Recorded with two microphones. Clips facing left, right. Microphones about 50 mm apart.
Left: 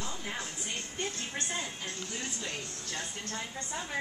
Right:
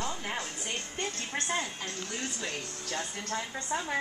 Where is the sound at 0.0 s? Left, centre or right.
Right.